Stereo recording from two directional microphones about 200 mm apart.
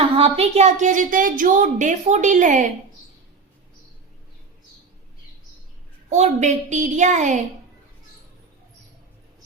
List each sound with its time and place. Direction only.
0.0 s a woman's voice: 30° right (ahead or behind)
6.1 s a woman's voice: 35° right (ahead or behind)